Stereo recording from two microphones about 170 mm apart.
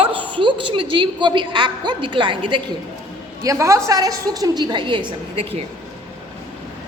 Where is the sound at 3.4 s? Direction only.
15° right (ahead or behind); by 5.6 s 35° right (ahead or behind).